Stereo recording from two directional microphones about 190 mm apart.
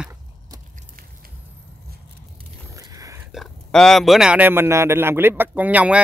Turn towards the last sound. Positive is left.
turn(degrees=-5)  # may be behind; listen again after turning